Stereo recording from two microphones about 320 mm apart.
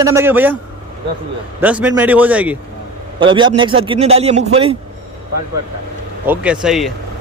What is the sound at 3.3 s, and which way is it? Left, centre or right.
A man's voice, centre.